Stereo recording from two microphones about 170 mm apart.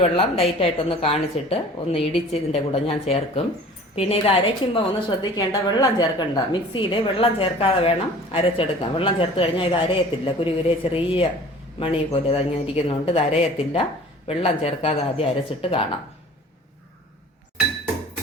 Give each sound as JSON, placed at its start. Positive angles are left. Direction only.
{"t": 0.0, "sound": "a woman's voice", "side_deg": 35}